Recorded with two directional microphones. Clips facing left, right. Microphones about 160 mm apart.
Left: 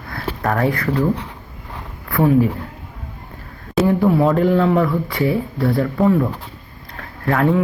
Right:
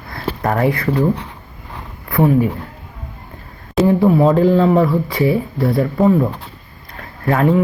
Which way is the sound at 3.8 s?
20° right (ahead or behind).